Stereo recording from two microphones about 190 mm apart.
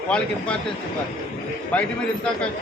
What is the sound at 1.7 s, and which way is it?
Speech, 5° left (ahead or behind).